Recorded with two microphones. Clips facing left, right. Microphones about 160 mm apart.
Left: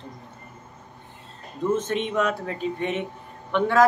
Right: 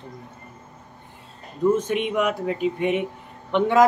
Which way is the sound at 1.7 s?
10° right (ahead or behind).